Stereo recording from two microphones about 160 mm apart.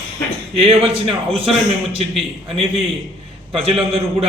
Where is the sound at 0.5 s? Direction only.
40° right (ahead or behind).